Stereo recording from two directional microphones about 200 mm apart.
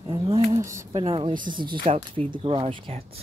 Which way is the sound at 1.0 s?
25° right (ahead or behind).